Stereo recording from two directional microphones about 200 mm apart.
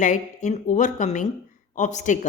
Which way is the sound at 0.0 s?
35° left (ahead or behind).